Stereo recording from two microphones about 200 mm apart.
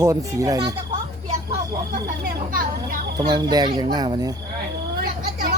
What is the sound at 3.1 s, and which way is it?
A man's voice, 20° right (ahead or behind).